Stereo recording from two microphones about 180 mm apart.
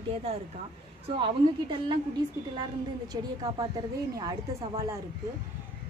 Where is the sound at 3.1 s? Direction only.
20° right (ahead or behind).